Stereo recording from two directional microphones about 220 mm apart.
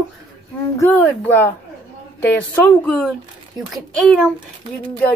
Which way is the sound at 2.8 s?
Centre (ahead or behind).